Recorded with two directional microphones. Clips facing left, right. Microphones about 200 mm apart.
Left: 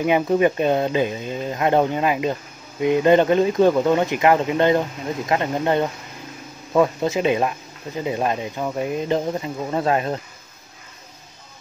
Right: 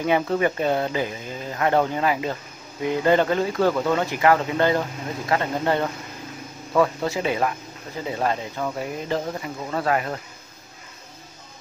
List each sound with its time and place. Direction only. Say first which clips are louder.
0.0 s speech: left 4 dB; 15° left (ahead or behind)